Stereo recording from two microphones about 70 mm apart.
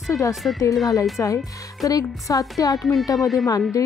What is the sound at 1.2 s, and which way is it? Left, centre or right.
Speech, left.